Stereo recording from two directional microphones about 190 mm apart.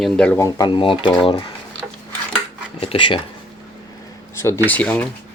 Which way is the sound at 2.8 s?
30° left (ahead or behind).